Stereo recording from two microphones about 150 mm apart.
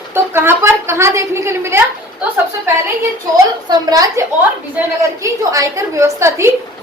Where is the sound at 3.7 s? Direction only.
25° right (ahead or behind).